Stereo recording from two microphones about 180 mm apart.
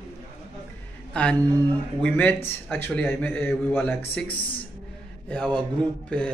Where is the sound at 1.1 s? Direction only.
5° left (ahead or behind).